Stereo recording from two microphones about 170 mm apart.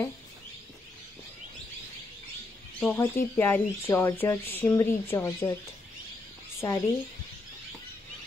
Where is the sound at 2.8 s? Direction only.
10° left (ahead or behind).